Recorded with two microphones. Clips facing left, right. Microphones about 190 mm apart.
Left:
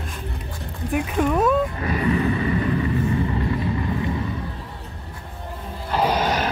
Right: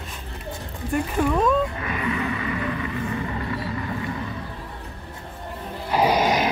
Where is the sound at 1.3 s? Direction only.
5° left (ahead or behind).